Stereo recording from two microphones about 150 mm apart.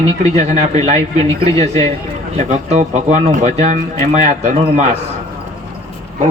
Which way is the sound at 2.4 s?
50° right (ahead or behind).